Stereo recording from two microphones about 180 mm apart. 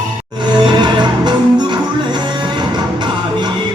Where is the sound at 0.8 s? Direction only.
25° right (ahead or behind).